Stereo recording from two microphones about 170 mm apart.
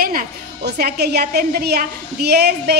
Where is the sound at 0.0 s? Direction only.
60° right (ahead or behind).